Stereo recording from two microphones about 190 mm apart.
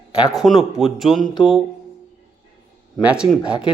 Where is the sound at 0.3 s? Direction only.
Centre (ahead or behind).